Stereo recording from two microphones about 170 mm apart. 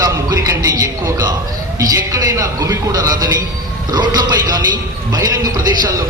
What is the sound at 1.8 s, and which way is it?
Music, 20° right (ahead or behind).